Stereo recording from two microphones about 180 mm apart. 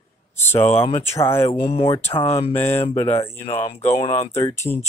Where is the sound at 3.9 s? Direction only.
35° left (ahead or behind).